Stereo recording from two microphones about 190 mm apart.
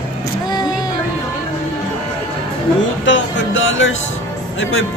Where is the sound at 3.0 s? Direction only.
85° left.